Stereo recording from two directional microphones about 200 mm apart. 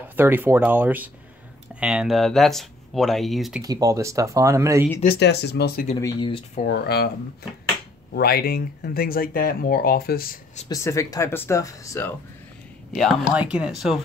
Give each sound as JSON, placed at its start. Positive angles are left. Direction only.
{"t": 0.1, "sound": "speech", "side_deg": -10}
{"t": 3.6, "sound": "speech", "side_deg": -15}
{"t": 5.0, "sound": "speech", "side_deg": 55}
{"t": 5.9, "sound": "speech", "side_deg": 20}
{"t": 6.7, "sound": "speech", "side_deg": 55}
{"t": 8.1, "sound": "speech", "side_deg": 50}
{"t": 10.7, "sound": "speech", "side_deg": 15}
{"t": 12.9, "sound": "speech", "side_deg": 0}